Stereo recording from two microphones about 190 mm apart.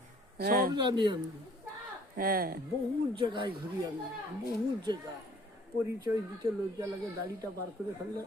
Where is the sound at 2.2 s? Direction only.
50° right (ahead or behind).